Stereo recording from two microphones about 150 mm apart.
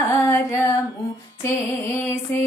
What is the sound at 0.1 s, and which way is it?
Female singing, 15° left (ahead or behind).